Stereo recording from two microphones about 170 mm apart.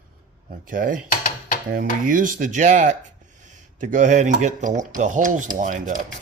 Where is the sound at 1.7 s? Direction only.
55° right (ahead or behind).